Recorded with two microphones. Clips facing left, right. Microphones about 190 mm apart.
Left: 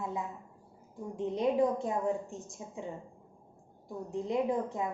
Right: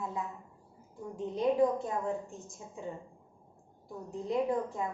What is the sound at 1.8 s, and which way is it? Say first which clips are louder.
Speech: left 2 dB; 15° left (ahead or behind).